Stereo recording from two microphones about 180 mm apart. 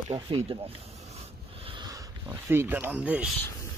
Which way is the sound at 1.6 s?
25° right (ahead or behind).